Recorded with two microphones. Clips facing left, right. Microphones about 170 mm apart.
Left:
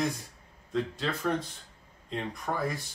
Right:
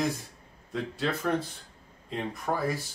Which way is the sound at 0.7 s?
5° right (ahead or behind).